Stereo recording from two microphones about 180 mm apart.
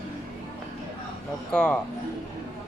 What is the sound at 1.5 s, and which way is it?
Speech, 5° left (ahead or behind).